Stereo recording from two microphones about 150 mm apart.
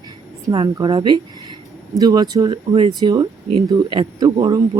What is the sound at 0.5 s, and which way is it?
A woman's voice, 30° right (ahead or behind).